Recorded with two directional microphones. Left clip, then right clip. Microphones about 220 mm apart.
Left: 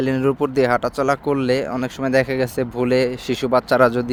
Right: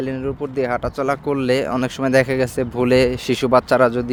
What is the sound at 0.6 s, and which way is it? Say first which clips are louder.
Speech: even; 5° left (ahead or behind).